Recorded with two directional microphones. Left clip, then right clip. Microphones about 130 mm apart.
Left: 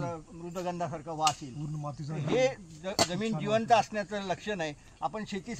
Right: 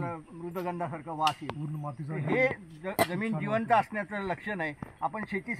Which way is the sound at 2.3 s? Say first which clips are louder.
Even; 40° left (ahead or behind).